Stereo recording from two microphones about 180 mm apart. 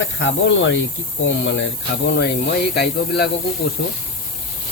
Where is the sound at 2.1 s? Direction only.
65° left (ahead or behind).